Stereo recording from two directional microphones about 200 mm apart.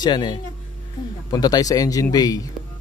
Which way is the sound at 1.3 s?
20° left (ahead or behind).